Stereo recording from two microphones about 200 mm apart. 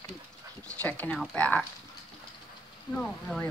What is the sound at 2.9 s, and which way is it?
Speech, centre (ahead or behind).